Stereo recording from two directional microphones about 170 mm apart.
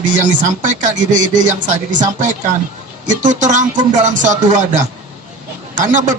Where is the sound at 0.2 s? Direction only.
45° right (ahead or behind).